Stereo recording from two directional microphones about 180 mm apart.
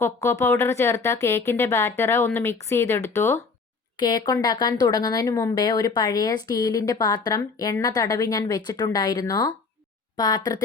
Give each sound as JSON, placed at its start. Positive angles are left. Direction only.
{"t": 0.0, "sound": "speech", "side_deg": 15}
{"t": 3.9, "sound": "speech", "side_deg": 25}